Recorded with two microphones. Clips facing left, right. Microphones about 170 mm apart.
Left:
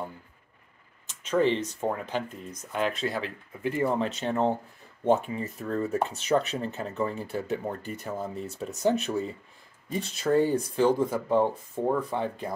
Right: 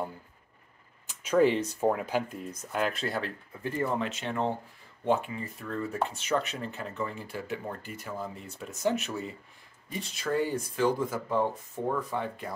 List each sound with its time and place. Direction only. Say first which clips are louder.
1.0 s speech: right 1 dB; 10° right (ahead or behind)
3.6 s speech: left 4 dB; 15° left (ahead or behind)
4.0 s speech: left 4 dB; 35° left (ahead or behind)